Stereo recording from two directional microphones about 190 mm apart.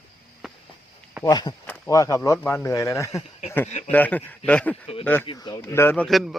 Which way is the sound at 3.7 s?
35° left (ahead or behind).